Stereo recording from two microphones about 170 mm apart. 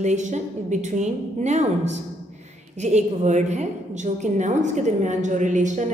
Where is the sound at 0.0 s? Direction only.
45° right (ahead or behind).